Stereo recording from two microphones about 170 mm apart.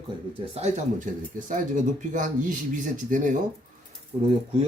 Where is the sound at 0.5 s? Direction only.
40° right (ahead or behind).